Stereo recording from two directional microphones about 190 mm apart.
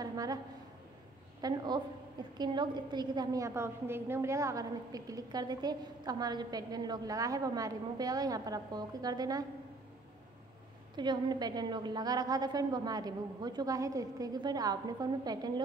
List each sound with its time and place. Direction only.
0.0 s a sound: 20° right (ahead or behind)
1.4 s a woman's voice: 20° right (ahead or behind)
11.0 s a woman's voice: 20° right (ahead or behind)